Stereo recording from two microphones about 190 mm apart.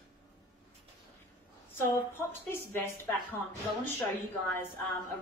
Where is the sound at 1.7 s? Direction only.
10° left (ahead or behind).